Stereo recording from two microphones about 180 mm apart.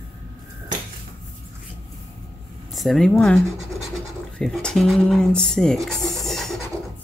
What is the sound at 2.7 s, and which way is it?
Speech, centre (ahead or behind).